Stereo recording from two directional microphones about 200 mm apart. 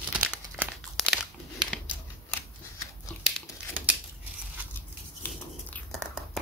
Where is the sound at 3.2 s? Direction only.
5° right (ahead or behind).